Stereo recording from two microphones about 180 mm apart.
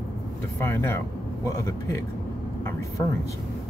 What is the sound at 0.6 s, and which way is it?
A man's voice, 15° left (ahead or behind).